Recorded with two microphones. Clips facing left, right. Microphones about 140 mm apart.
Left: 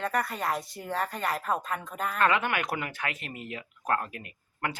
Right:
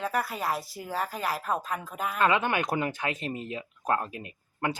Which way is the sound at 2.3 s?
20° right (ahead or behind).